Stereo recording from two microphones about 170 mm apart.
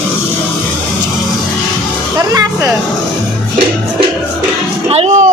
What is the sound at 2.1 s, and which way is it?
Speech, 20° right (ahead or behind).